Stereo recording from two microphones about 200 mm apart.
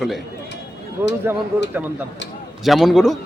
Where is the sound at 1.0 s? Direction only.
10° right (ahead or behind).